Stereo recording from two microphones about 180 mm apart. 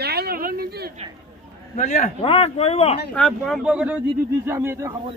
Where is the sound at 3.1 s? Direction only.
5° left (ahead or behind); by 4.9 s 15° right (ahead or behind).